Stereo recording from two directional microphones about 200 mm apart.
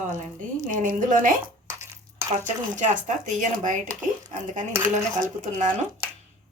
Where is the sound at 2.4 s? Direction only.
40° right (ahead or behind).